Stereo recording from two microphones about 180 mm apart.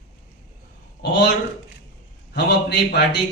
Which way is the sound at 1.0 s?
70° left (ahead or behind).